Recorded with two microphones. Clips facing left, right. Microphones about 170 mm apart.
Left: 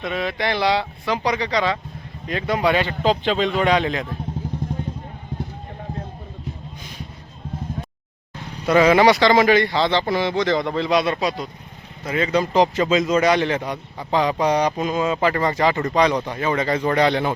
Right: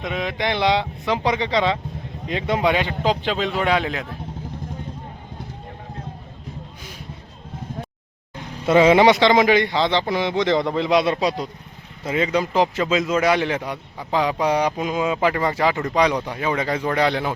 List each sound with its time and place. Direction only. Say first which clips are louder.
0.0 s a man's voice: left 1 dB; 15° right (ahead or behind)
8.6 s a man's voice: right 1 dB; 25° right (ahead or behind)
12.0 s a man's voice: even; 20° right (ahead or behind)